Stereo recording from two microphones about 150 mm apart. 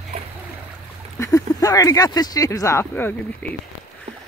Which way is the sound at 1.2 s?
20° left (ahead or behind).